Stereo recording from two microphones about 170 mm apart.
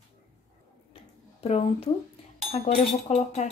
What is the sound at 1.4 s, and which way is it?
A woman's voice, 35° left (ahead or behind).